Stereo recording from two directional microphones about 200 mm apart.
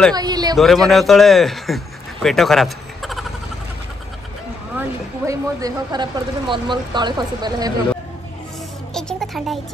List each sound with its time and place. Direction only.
0.1 s a sound: 20° right (ahead or behind)
0.8 s speech: centre (ahead or behind)
4.7 s speech: 15° right (ahead or behind)
8.9 s music: centre (ahead or behind)